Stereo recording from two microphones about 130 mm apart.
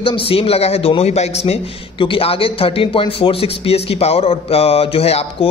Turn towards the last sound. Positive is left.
turn(degrees=50)  # may be behind; listen again after turning